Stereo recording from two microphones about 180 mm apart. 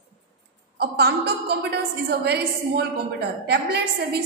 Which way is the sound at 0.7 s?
65° right (ahead or behind).